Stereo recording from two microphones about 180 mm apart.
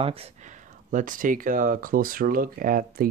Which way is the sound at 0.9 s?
45° right (ahead or behind).